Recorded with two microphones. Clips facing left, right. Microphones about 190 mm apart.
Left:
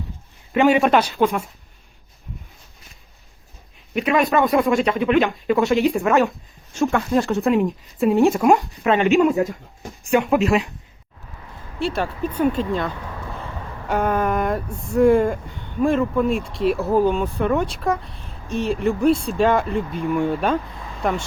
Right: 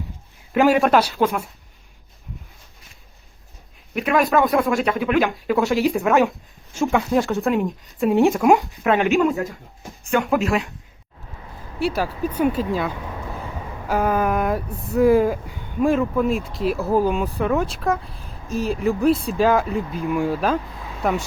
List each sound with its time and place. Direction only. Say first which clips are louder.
0.5 s speech: even; centre (ahead or behind)
3.9 s speech: even; centre (ahead or behind)
9.3 s speech: left 5 dB; 15° left (ahead or behind)
10.2 s speech: left 2 dB; centre (ahead or behind)
11.8 s speech: right 1 dB; 5° right (ahead or behind)
13.3 s a sound: right 1 dB; 5° right (ahead or behind)
14.9 s speech: even; 5° right (ahead or behind)